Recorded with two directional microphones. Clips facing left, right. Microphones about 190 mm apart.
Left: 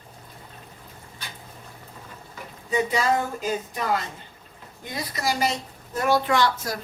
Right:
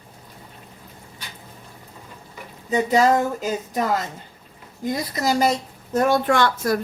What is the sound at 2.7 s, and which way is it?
Speech, 40° right (ahead or behind).